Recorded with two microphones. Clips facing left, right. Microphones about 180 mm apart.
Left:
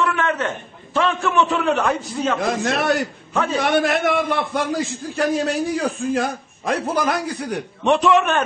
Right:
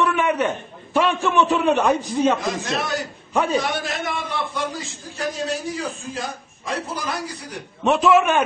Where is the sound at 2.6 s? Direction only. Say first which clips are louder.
Left 6 dB; 65° left (ahead or behind).